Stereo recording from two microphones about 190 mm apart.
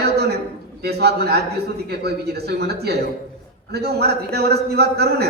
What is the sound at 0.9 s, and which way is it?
Speech, 60° right (ahead or behind).